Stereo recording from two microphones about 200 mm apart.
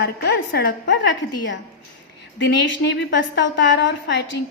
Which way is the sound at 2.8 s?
60° left (ahead or behind).